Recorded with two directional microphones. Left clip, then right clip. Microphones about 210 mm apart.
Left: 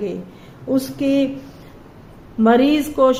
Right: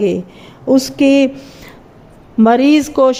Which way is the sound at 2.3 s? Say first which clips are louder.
Right 4 dB; 40° right (ahead or behind).